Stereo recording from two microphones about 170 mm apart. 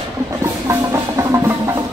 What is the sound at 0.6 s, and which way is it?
Music, 20° right (ahead or behind).